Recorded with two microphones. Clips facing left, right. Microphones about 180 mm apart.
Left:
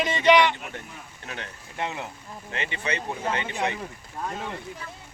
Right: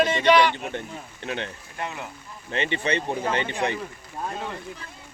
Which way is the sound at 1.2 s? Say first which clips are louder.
Right 7 dB; 30° right (ahead or behind).